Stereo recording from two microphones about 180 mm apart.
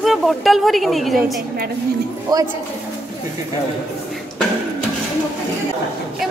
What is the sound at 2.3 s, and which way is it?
Speech, 20° right (ahead or behind).